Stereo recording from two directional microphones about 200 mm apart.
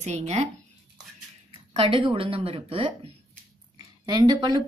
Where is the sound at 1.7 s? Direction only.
25° right (ahead or behind).